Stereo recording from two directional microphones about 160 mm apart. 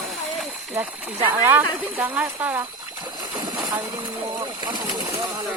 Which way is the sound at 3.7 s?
25° right (ahead or behind).